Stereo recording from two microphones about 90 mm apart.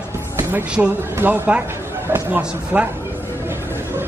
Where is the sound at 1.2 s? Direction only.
20° right (ahead or behind).